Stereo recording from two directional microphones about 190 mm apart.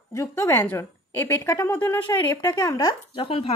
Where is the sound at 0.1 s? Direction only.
15° left (ahead or behind).